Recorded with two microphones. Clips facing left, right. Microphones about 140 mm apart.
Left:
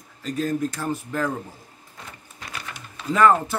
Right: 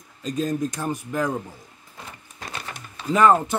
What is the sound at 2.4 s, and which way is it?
Printer, 30° right (ahead or behind).